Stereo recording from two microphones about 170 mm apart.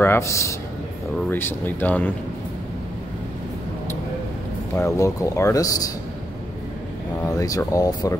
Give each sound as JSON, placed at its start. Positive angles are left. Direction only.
{"t": 0.0, "sound": "a man's voice", "side_deg": 15}
{"t": 4.7, "sound": "speech", "side_deg": 20}
{"t": 7.2, "sound": "speech", "side_deg": 20}